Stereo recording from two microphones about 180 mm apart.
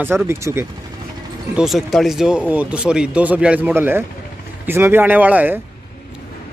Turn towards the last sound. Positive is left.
turn(degrees=-10)  # may be behind; listen again after turning